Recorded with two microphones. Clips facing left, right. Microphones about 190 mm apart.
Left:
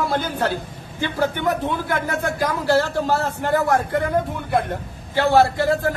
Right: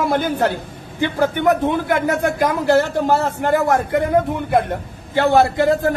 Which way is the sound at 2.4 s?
20° right (ahead or behind).